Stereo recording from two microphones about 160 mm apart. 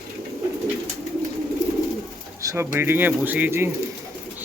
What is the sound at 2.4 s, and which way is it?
Speech, 20° right (ahead or behind).